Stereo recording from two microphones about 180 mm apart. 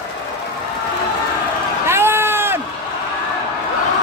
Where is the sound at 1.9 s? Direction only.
10° right (ahead or behind).